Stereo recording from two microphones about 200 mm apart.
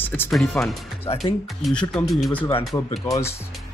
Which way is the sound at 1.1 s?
30° left (ahead or behind).